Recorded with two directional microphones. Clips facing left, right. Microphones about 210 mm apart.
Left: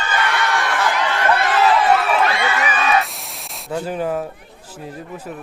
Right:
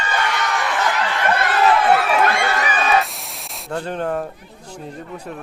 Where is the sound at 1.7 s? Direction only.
55° right (ahead or behind).